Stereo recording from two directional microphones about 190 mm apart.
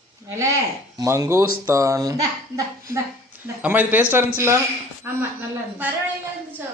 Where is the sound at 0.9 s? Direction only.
15° right (ahead or behind).